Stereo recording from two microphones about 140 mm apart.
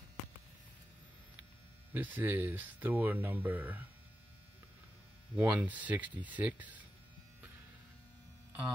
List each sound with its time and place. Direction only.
2.0 s speech: 10° right (ahead or behind)
5.3 s speech: 10° right (ahead or behind)